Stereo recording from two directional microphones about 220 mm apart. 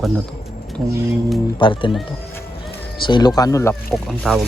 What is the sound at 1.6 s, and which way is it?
Speech, 20° left (ahead or behind).